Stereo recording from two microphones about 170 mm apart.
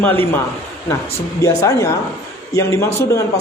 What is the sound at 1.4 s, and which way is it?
A man's voice, 20° left (ahead or behind).